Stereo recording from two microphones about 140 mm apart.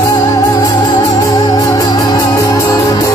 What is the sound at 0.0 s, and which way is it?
Music, 25° left (ahead or behind).